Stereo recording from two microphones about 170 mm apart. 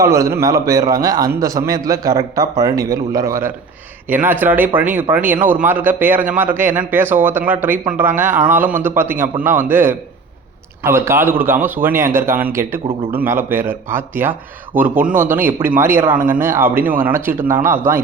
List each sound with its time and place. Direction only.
0.0 s a man's voice: 20° right (ahead or behind)